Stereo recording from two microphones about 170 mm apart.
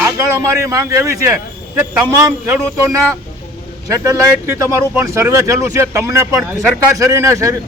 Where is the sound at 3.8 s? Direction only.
20° right (ahead or behind).